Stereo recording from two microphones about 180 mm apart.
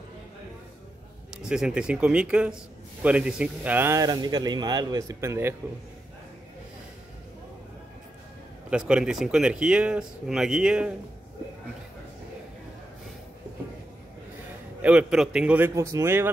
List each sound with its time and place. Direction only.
1.4 s speech: 5° right (ahead or behind)
8.6 s speech: 5° right (ahead or behind)
14.8 s speech: 5° right (ahead or behind)